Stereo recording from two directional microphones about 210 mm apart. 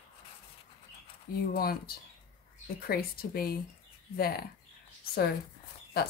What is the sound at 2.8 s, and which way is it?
Speech, 45° left (ahead or behind).